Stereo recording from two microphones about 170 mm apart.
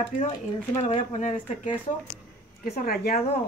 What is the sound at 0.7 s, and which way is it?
Speech, 45° left (ahead or behind).